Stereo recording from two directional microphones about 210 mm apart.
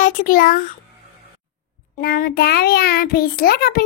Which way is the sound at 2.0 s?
45° left (ahead or behind).